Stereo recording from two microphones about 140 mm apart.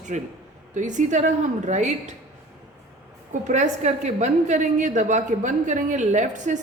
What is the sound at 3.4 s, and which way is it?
A woman's voice, 60° right (ahead or behind).